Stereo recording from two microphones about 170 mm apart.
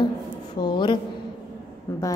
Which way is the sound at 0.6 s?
25° left (ahead or behind).